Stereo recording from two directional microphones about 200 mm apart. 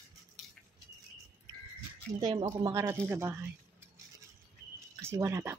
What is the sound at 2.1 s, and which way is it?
Speech, 20° right (ahead or behind).